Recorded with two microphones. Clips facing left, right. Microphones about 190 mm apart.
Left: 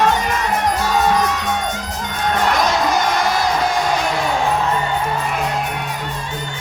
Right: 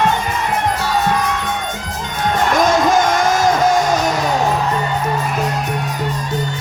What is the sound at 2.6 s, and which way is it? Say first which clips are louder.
Music: right 4 dB; 45° right (ahead or behind).